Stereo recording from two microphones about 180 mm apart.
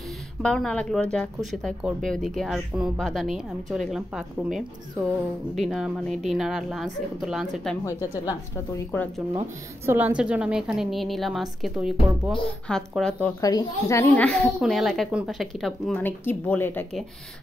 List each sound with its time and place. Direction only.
0.4 s speech: 5° left (ahead or behind)
7.8 s speech: 15° left (ahead or behind)
9.8 s speech: 10° right (ahead or behind)
13.4 s speech: 20° left (ahead or behind)